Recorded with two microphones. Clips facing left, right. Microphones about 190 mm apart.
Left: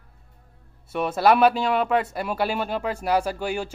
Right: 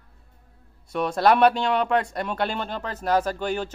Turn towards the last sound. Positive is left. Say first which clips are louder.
# even
turn(degrees=10)  # may be behind; listen again after turning